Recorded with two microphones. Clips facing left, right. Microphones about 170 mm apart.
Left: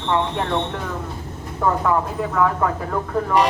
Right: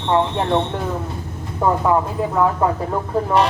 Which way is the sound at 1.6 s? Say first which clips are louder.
Right 2 dB; 20° right (ahead or behind).